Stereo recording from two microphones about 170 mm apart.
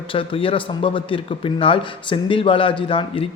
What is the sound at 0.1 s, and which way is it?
A man's voice, 30° left (ahead or behind).